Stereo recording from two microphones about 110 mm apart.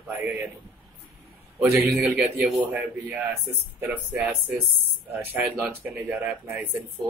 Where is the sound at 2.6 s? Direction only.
15° right (ahead or behind).